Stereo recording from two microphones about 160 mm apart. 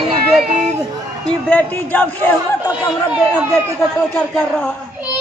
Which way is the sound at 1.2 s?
10° left (ahead or behind).